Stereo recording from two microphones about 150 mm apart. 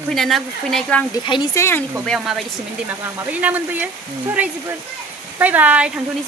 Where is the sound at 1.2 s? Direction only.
30° left (ahead or behind).